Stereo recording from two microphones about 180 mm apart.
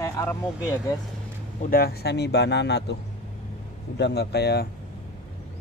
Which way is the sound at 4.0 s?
65° left (ahead or behind).